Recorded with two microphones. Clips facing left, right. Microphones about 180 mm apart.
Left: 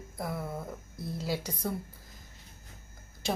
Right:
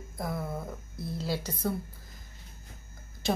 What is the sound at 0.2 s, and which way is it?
A woman's voice, 10° left (ahead or behind).